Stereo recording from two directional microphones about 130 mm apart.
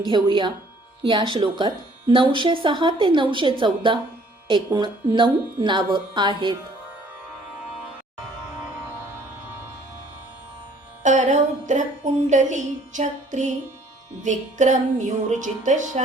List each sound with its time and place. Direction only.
0.1 s speech: 40° right (ahead or behind)
11.0 s music: 70° right (ahead or behind)